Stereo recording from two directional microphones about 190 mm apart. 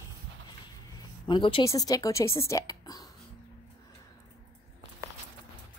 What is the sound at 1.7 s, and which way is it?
A woman's voice, 20° left (ahead or behind).